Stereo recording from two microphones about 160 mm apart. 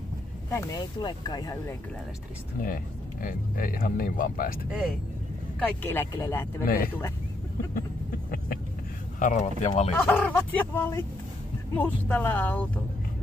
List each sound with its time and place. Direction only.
0.5 s speech: 20° left (ahead or behind)
2.6 s speech: 60° left (ahead or behind)
5.6 s speech: 10° left (ahead or behind)
6.6 s speech: 65° left (ahead or behind)
9.2 s speech: 50° left (ahead or behind)
10.0 s speech: 15° left (ahead or behind)